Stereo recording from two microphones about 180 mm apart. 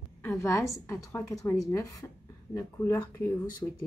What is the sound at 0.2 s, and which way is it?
Speech, 10° left (ahead or behind).